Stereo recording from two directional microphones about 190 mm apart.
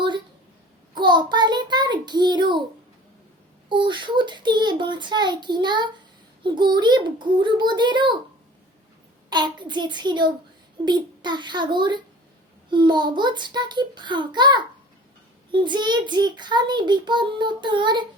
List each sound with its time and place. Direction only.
0.9 s child singing: 25° right (ahead or behind)
3.7 s a child's voice: 25° right (ahead or behind)
9.3 s a child's voice: 25° right (ahead or behind)